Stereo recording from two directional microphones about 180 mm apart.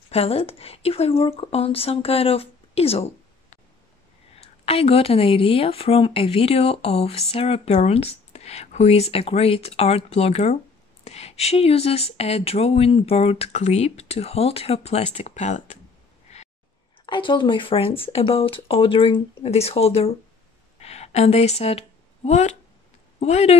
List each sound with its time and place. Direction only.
0.1 s speech: 35° left (ahead or behind)
16.3 s a sound: 35° left (ahead or behind)
17.0 s speech: 25° left (ahead or behind)